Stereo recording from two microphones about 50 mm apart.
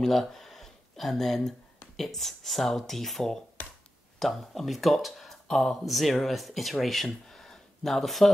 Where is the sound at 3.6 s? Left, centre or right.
Left.